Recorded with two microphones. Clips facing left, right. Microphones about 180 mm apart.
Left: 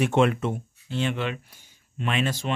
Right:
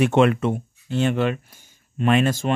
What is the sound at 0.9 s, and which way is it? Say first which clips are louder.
Speech: right 6 dB; 45° right (ahead or behind).